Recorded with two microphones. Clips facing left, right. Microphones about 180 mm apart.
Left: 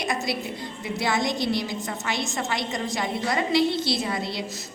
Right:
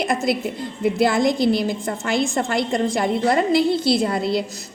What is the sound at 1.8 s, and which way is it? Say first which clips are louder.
A woman's voice: right 8 dB; 55° right (ahead or behind).